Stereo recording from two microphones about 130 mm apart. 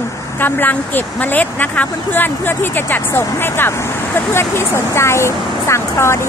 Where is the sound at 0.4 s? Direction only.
15° left (ahead or behind).